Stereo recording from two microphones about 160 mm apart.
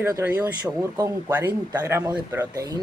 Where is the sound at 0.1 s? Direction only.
10° right (ahead or behind).